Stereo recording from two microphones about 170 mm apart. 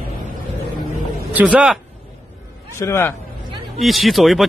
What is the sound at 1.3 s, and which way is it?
Speech, 10° right (ahead or behind).